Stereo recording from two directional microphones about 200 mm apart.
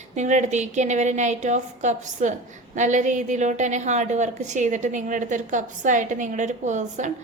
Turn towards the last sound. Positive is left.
turn(degrees=-35)  # may be behind; listen again after turning